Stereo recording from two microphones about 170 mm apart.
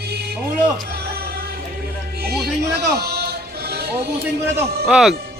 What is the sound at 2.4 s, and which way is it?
Music, 70° right (ahead or behind).